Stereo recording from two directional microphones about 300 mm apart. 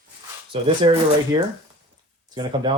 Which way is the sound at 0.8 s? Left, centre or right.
Centre.